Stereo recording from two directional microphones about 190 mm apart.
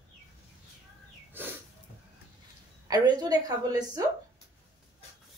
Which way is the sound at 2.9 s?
20° right (ahead or behind).